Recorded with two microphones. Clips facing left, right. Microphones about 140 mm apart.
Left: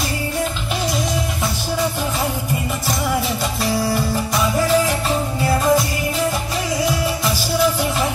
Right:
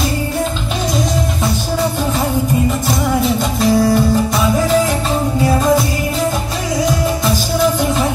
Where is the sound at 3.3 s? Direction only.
20° right (ahead or behind).